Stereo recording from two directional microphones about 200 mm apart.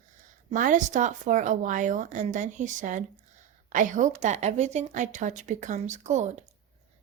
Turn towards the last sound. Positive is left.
turn(degrees=-35)  # may be behind; listen again after turning